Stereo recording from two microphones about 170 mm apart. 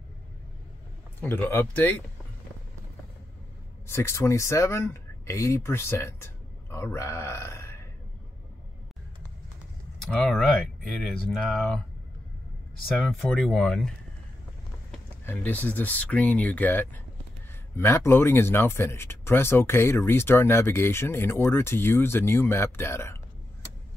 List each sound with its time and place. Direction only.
1.2 s speech: 10° left (ahead or behind)
3.8 s speech: 15° left (ahead or behind)
10.0 s speech: 5° left (ahead or behind)
12.8 s speech: centre (ahead or behind)
15.2 s speech: 10° left (ahead or behind)